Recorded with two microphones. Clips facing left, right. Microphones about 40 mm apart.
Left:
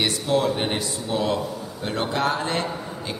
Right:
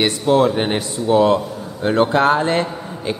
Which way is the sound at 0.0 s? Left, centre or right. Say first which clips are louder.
Right 7 dB; right.